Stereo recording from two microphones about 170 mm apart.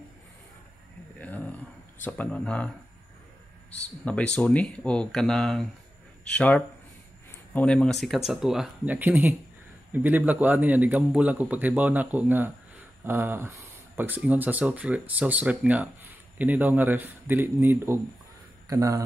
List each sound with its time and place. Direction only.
1.2 s a sound: 10° left (ahead or behind)
2.0 s speech: 5° left (ahead or behind)
4.0 s speech: 5° left (ahead or behind); by 19.0 s 20° right (ahead or behind)